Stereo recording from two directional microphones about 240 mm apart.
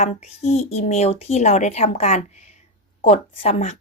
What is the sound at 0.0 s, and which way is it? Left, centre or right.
Speech, left.